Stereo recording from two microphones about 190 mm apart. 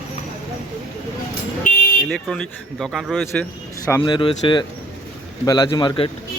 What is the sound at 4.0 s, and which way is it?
A man's voice, 25° left (ahead or behind).